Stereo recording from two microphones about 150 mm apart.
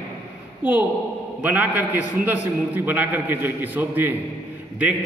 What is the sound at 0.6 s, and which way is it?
A man's voice, 10° right (ahead or behind).